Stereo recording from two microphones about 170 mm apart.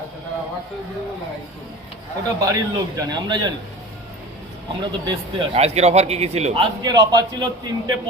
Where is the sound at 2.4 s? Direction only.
20° right (ahead or behind).